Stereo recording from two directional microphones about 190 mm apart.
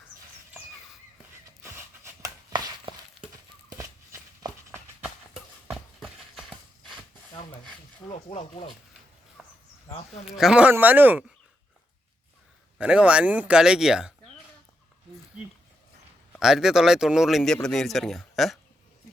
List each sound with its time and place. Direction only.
1.5 s a sound: 15° right (ahead or behind)
8.3 s speech: 30° left (ahead or behind)
9.4 s a sound: centre (ahead or behind)
10.2 s speech: centre (ahead or behind)
12.8 s speech: 5° right (ahead or behind)
16.4 s speech: 5° right (ahead or behind)